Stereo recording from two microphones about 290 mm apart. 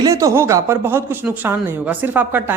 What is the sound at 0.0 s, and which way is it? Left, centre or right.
A man's voice, centre.